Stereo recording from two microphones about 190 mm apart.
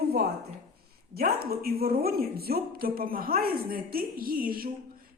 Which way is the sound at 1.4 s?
55° right (ahead or behind).